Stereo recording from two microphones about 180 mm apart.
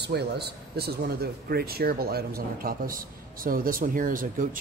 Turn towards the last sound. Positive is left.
turn(degrees=-50)  # may be behind; listen again after turning